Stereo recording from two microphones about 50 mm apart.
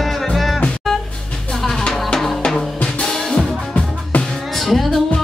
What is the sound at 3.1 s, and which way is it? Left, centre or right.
Music, centre.